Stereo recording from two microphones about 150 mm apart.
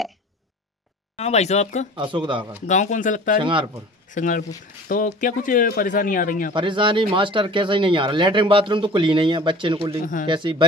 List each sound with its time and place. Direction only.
1.1 s speech: 45° left (ahead or behind)
2.0 s speech: 35° right (ahead or behind)
2.6 s speech: 55° left (ahead or behind)
3.3 s speech: 35° right (ahead or behind)
4.1 s speech: 60° left (ahead or behind)
6.5 s speech: 35° right (ahead or behind)